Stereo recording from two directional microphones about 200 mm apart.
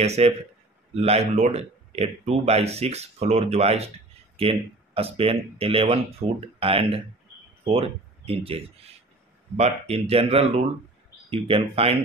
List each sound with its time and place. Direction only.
0.0 s speech: 35° right (ahead or behind)